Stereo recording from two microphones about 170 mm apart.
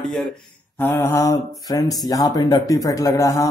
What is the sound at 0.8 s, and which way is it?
Mantra, 15° left (ahead or behind).